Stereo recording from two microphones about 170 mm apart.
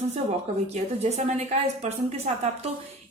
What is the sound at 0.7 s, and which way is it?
A woman's voice, 40° right (ahead or behind).